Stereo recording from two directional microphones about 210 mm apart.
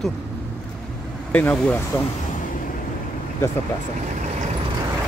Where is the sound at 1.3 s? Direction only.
5° left (ahead or behind).